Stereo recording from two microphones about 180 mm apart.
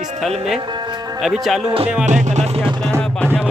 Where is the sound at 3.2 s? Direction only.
5° left (ahead or behind).